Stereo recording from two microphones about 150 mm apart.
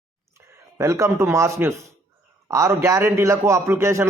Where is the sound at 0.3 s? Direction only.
20° right (ahead or behind).